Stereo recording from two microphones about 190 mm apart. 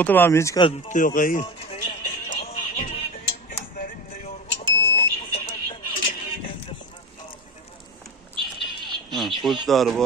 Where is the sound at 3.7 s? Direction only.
45° left (ahead or behind).